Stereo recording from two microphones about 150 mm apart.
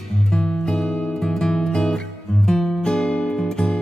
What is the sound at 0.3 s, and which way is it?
Music, 5° left (ahead or behind).